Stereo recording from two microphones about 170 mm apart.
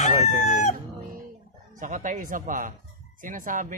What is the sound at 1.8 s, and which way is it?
Chicken, 50° right (ahead or behind).